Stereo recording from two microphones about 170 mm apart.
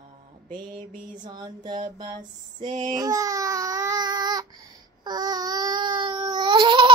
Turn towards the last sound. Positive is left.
turn(degrees=-30)  # may be behind; listen again after turning